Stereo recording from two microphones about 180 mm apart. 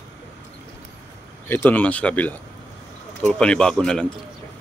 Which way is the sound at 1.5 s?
10° left (ahead or behind).